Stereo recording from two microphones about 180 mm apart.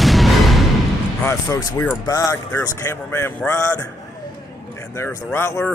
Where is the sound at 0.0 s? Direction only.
Centre (ahead or behind).